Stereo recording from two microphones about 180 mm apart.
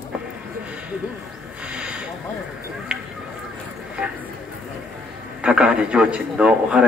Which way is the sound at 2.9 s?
5° right (ahead or behind).